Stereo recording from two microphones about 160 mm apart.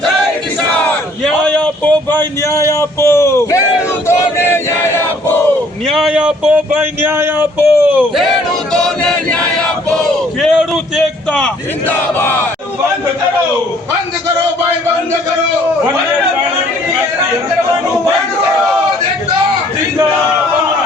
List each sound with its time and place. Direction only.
1.2 s a sound: 5° left (ahead or behind)
5.9 s speech: 5° right (ahead or behind)
8.7 s chant: 5° left (ahead or behind)
9.9 s a man's voice: centre (ahead or behind)